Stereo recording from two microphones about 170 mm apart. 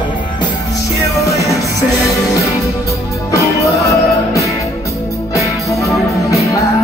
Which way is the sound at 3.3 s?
20° left (ahead or behind).